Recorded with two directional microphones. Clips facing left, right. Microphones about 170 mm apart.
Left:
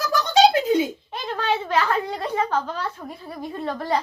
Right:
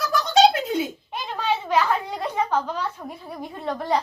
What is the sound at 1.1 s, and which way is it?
A woman's voice, 10° right (ahead or behind).